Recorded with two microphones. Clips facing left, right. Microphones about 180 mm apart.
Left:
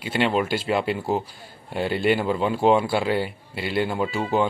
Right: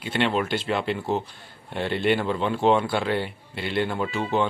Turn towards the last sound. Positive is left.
turn(degrees=5)  # may be behind; listen again after turning